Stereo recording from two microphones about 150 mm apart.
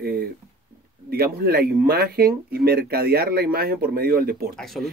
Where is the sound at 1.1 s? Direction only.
90° right.